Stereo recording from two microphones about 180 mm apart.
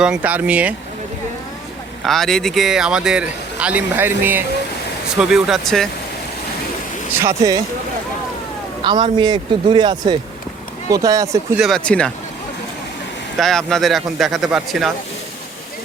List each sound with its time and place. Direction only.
0.0 s speech: 5° right (ahead or behind)
2.0 s speech: centre (ahead or behind)
7.2 s speech: 20° right (ahead or behind)
8.8 s speech: 25° right (ahead or behind)
11.5 s speech: centre (ahead or behind)
13.4 s speech: centre (ahead or behind)